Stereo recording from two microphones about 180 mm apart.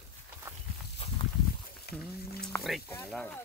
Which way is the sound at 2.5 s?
15° left (ahead or behind).